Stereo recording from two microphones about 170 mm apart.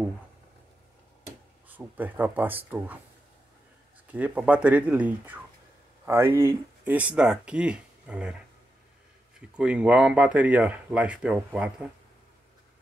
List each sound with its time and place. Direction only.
1.7 s speech: 10° right (ahead or behind)
4.1 s speech: 10° right (ahead or behind)
9.4 s speech: 5° right (ahead or behind)